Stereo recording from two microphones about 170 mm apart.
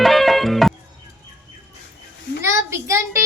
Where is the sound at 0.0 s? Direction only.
Centre (ahead or behind).